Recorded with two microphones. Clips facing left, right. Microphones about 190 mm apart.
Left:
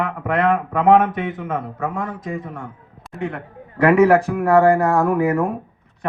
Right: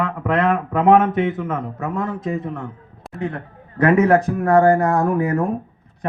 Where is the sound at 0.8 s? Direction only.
25° right (ahead or behind).